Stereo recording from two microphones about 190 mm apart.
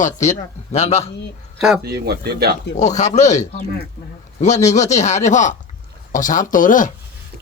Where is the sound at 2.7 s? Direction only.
40° left (ahead or behind).